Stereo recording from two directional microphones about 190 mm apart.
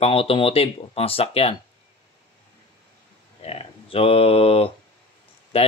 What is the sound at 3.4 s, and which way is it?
Speech, 30° left (ahead or behind).